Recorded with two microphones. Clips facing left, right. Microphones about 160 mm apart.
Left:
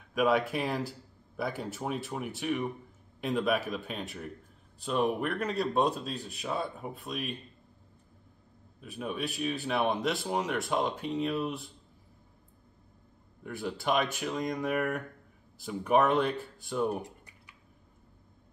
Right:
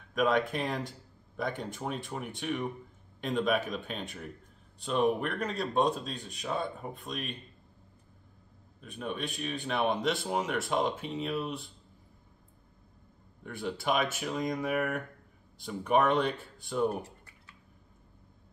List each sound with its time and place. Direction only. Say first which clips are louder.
0.1 s speech: left 1 dB; 10° left (ahead or behind)
8.8 s speech: left 1 dB; 5° left (ahead or behind)
13.4 s speech: even; centre (ahead or behind)
17.0 s a sound: left 3 dB; 15° left (ahead or behind)